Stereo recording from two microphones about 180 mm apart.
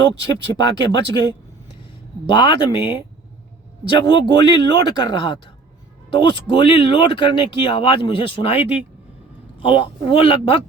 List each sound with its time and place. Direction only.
0.3 s speech: 20° left (ahead or behind)
2.2 s speech: 25° left (ahead or behind)
6.5 s speech: 30° left (ahead or behind)